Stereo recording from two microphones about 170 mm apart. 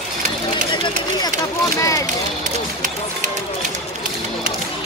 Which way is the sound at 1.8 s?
20° left (ahead or behind).